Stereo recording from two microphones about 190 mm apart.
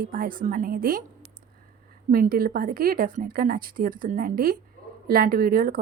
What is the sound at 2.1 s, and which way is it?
A woman's voice, 50° right (ahead or behind).